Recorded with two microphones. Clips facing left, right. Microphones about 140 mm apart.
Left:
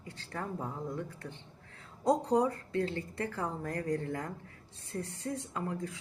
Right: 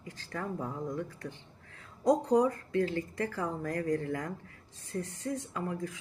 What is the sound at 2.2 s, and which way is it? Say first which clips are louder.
A woman's voice: right 2 dB; 30° left (ahead or behind).